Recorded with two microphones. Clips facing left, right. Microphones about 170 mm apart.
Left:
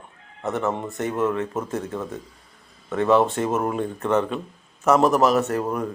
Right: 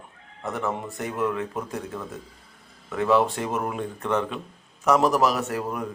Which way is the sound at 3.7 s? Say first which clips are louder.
Left 5 dB; 35° left (ahead or behind).